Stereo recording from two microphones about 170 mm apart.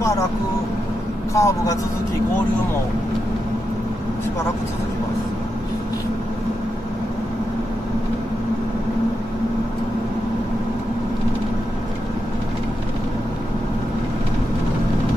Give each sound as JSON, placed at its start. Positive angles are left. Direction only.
{"t": 1.3, "sound": "a man's voice", "side_deg": 20}